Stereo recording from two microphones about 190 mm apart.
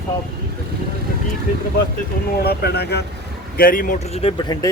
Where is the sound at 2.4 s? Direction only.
55° left (ahead or behind).